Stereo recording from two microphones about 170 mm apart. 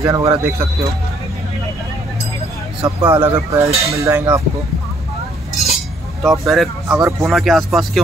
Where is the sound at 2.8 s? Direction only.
20° right (ahead or behind).